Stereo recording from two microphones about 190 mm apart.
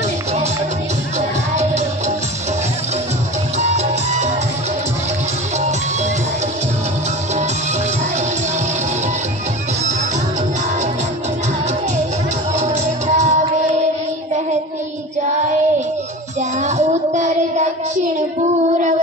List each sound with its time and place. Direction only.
1.5 s music: 35° right (ahead or behind)
3.5 s music: 35° right (ahead or behind)
12.5 s music: 40° right (ahead or behind)
16.6 s child singing: 35° right (ahead or behind)